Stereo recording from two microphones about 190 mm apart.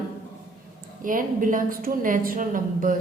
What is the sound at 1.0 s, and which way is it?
A woman's voice, 45° right (ahead or behind).